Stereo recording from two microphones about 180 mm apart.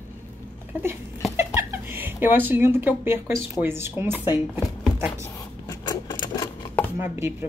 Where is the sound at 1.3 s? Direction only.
10° right (ahead or behind).